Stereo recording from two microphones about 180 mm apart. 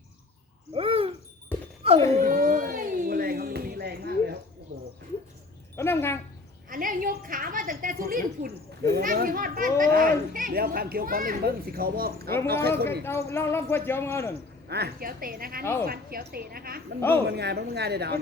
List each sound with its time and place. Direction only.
0.7 s owl: 30° right (ahead or behind)
1.5 s a sound: 10° left (ahead or behind)
2.2 s a sound: 50° right (ahead or behind)
5.7 s speech: 15° left (ahead or behind)
6.7 s a sound: 50° right (ahead or behind)
9.7 s a child's voice: 50° right (ahead or behind)
13.1 s speech: 15° left (ahead or behind)
14.7 s speech: 60° right (ahead or behind)
15.6 s speech: 15° left (ahead or behind)
15.9 s speech: 55° right (ahead or behind)